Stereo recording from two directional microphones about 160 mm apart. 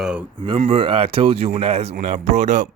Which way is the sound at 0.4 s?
40° right (ahead or behind).